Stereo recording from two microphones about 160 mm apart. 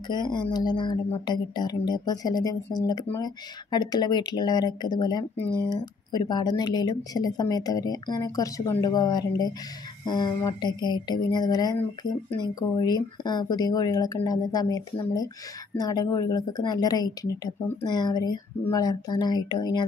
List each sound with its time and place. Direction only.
0.1 s speech: 25° left (ahead or behind)